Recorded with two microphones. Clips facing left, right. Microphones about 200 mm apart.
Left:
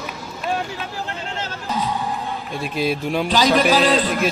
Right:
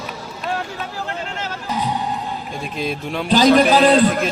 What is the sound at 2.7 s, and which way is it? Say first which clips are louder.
Speech: left 4 dB; 5° left (ahead or behind).